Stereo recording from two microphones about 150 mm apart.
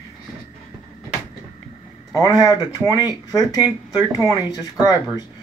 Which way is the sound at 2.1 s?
25° left (ahead or behind).